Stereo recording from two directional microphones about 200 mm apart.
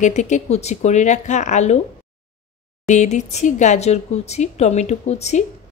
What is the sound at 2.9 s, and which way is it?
A woman's voice, 35° left (ahead or behind).